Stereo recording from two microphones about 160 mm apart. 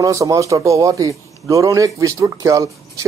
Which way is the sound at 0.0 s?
20° right (ahead or behind).